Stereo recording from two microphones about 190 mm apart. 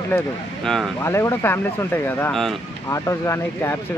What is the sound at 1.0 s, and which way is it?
Speech, 15° left (ahead or behind).